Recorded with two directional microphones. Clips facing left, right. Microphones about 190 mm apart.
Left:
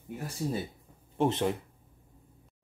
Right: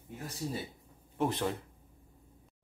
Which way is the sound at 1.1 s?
20° left (ahead or behind).